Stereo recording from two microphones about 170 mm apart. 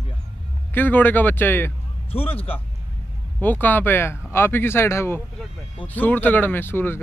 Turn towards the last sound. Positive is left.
turn(degrees=15)  # may be behind; listen again after turning